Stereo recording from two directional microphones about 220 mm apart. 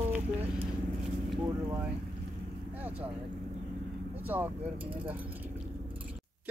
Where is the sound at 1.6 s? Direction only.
10° right (ahead or behind).